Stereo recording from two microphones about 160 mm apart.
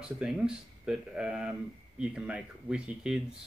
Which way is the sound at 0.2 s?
5° right (ahead or behind).